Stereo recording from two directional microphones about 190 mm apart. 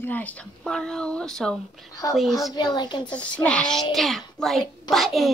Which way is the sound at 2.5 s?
20° left (ahead or behind).